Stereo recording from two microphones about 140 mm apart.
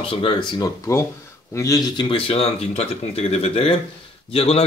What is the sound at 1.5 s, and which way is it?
A man's voice, 25° left (ahead or behind).